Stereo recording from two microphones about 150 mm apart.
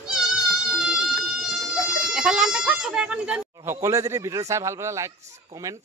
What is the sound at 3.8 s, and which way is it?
Speech, 20° right (ahead or behind).